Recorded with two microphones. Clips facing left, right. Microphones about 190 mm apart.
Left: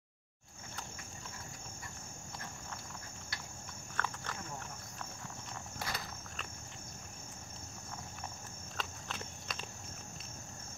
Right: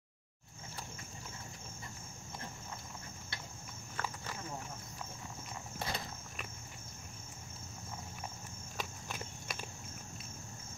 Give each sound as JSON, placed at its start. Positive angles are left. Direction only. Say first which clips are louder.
{"t": 3.9, "sound": "cricket", "louder": "left 1 dB", "side_deg": -10}
{"t": 5.8, "sound": "a sound", "louder": "right 2 dB", "side_deg": -25}
{"t": 8.7, "sound": "horse", "louder": "right 1 dB", "side_deg": -10}